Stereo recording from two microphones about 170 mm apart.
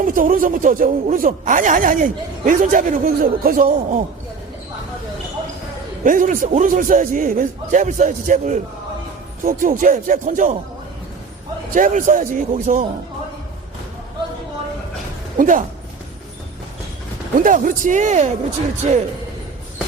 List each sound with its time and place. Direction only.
0.0 s speech: 55° right (ahead or behind)
6.1 s speech: 50° right (ahead or behind)
11.7 s speech: 50° right (ahead or behind)
15.4 s speech: 50° right (ahead or behind)
17.3 s speech: 55° right (ahead or behind)